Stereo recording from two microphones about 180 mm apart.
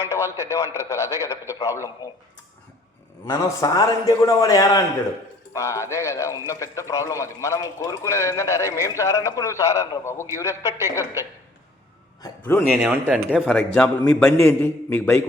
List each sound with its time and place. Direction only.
0.1 s a man's voice: 15° left (ahead or behind)
3.2 s a man's voice: 20° left (ahead or behind)
12.4 s a man's voice: 15° left (ahead or behind)
12.7 s a man's voice: centre (ahead or behind)